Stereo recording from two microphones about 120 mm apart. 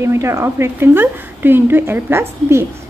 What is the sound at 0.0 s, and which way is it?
Speech, 25° right (ahead or behind).